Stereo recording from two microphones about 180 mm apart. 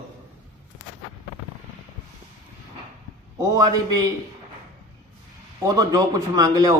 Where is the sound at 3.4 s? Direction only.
20° right (ahead or behind).